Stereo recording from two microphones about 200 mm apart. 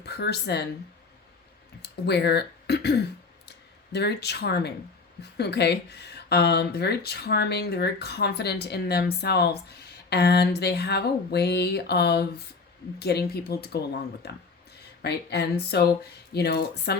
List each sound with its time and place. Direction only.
0.0 s speech: 55° left (ahead or behind)
1.8 s speech: 55° left (ahead or behind)